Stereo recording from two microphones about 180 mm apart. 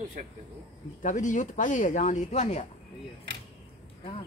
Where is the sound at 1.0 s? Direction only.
45° left (ahead or behind).